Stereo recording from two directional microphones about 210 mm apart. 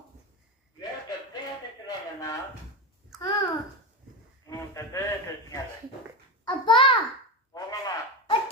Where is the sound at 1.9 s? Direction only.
15° left (ahead or behind).